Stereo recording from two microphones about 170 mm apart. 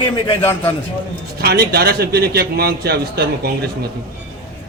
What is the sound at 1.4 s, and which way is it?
A man's voice, 70° right (ahead or behind).